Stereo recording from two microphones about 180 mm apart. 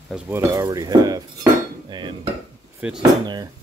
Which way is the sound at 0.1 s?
15° right (ahead or behind).